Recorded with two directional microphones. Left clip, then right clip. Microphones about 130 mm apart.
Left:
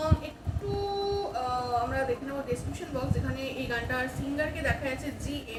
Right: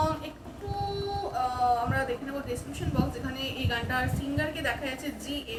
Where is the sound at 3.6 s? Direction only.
20° right (ahead or behind).